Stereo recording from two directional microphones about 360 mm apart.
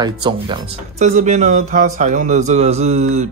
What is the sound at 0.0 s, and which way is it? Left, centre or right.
Speech, centre.